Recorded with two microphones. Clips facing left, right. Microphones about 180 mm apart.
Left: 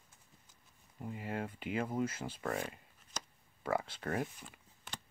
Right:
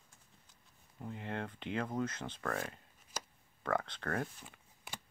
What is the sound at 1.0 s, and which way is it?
Speech, 5° left (ahead or behind).